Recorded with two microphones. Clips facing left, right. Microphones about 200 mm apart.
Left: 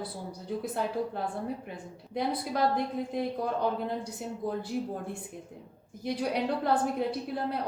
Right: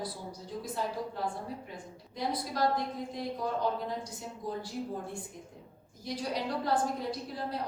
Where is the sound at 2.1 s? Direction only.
60° left (ahead or behind).